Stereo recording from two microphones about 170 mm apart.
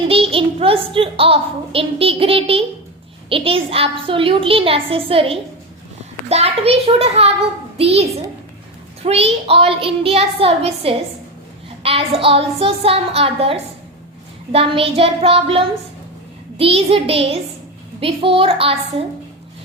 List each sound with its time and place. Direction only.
0.1 s a child's voice: 35° right (ahead or behind)
9.0 s a child's voice: 35° right (ahead or behind)